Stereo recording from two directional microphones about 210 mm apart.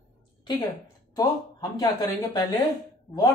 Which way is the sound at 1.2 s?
15° left (ahead or behind).